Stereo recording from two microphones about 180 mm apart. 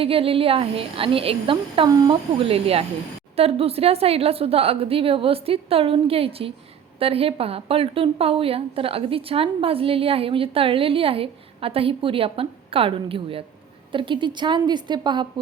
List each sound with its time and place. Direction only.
0.0 s a woman's voice: 30° right (ahead or behind)